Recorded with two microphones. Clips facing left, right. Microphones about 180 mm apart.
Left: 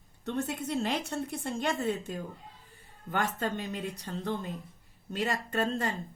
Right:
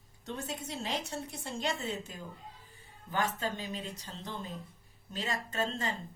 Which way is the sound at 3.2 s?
55° left (ahead or behind).